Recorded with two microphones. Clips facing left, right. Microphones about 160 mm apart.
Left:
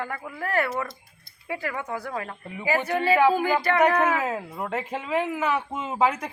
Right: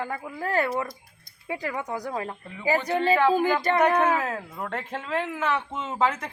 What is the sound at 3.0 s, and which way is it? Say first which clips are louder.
Speech: left 1 dB; 10° left (ahead or behind).